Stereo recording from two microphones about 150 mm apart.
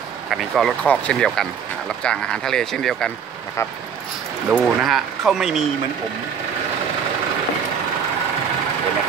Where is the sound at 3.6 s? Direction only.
20° left (ahead or behind).